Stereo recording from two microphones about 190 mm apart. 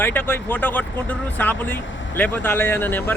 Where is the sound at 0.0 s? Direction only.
10° left (ahead or behind).